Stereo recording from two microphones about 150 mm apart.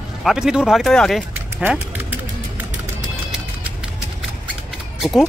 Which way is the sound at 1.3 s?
15° right (ahead or behind).